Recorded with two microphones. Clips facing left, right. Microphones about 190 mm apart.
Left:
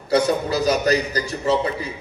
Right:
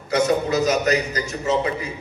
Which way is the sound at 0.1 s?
35° left (ahead or behind).